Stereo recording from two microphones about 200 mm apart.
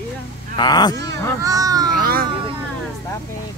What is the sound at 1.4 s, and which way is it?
Speech, 15° right (ahead or behind).